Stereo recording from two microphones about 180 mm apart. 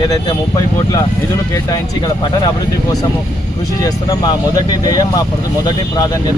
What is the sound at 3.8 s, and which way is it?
Speech, 20° left (ahead or behind).